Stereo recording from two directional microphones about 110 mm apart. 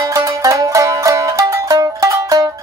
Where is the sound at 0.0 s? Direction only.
30° right (ahead or behind).